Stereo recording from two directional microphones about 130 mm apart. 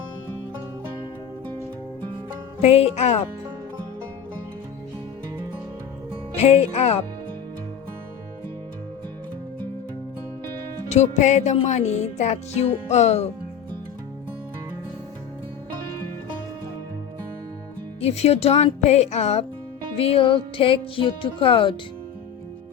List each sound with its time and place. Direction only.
2.6 s speech: 50° left (ahead or behind)
6.3 s speech: 50° left (ahead or behind)
10.8 s music: 60° left (ahead or behind)
18.0 s music: 55° left (ahead or behind)
20.0 s speech: 45° left (ahead or behind)